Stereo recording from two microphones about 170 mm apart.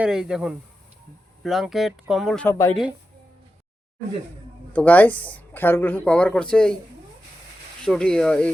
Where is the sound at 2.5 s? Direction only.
15° left (ahead or behind).